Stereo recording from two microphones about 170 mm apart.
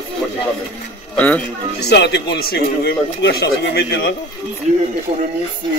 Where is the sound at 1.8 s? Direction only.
85° left.